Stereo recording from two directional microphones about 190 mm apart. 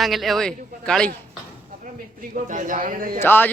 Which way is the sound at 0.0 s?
Centre (ahead or behind).